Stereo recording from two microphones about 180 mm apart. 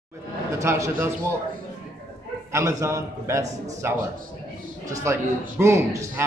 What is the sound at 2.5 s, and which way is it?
A man's voice, 20° right (ahead or behind).